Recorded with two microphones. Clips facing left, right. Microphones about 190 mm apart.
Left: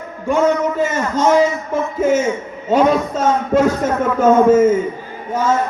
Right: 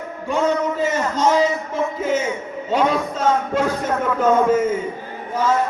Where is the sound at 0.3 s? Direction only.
50° left (ahead or behind).